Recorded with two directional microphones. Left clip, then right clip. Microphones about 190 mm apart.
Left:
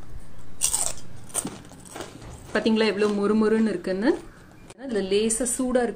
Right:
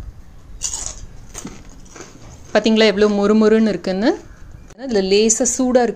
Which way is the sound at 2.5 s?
40° right (ahead or behind).